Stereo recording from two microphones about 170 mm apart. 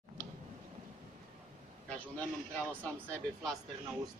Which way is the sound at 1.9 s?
10° left (ahead or behind).